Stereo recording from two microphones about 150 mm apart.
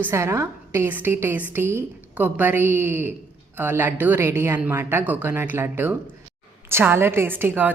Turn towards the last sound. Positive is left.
turn(degrees=-15)  # may be behind; listen again after turning